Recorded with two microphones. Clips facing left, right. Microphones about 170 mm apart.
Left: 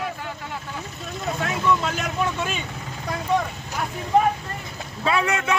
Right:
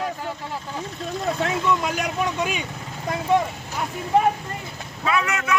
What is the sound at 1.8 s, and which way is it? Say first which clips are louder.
Speech: right 1 dB; 15° right (ahead or behind).